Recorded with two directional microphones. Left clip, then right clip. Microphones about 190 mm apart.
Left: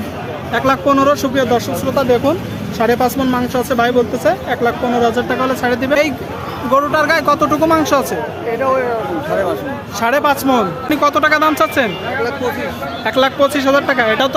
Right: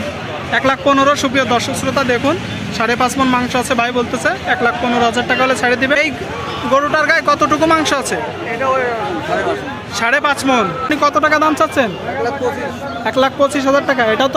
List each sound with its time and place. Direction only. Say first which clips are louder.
0.5 s speech: even; 5° right (ahead or behind)
10.0 s speech: even; 5° left (ahead or behind)
13.1 s speech: even; centre (ahead or behind)